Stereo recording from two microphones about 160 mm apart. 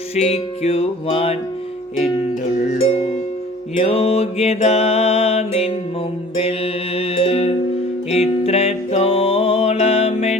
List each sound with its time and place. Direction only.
0.2 s music: 40° left (ahead or behind)
3.8 s music: 40° left (ahead or behind)